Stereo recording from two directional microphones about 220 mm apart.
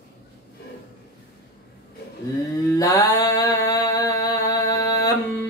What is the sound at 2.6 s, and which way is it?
Mantra, 15° left (ahead or behind).